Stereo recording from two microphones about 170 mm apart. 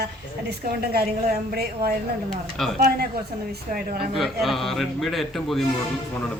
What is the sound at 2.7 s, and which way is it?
Speech, 60° right (ahead or behind).